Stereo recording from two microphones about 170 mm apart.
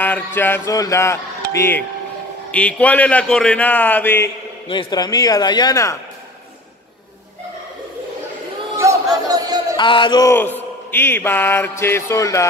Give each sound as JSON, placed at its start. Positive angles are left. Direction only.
{"t": 0.0, "sound": "chant", "side_deg": 10}
{"t": 4.6, "sound": "speech", "side_deg": 30}
{"t": 8.7, "sound": "a sound", "side_deg": -20}
{"t": 9.8, "sound": "speech", "side_deg": 30}
{"t": 10.3, "sound": "chant", "side_deg": 10}